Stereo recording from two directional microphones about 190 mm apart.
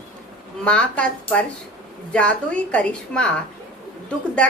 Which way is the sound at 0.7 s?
5° left (ahead or behind).